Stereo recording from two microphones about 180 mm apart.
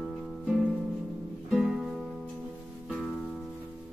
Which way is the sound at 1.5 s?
Centre (ahead or behind).